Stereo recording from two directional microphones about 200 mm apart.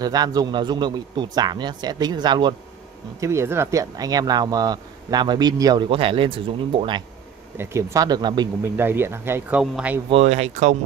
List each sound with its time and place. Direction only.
0.0 s speech: 20° right (ahead or behind)
7.5 s speech: 15° right (ahead or behind)
8.7 s speech: 10° right (ahead or behind)
10.0 s speech: 30° right (ahead or behind)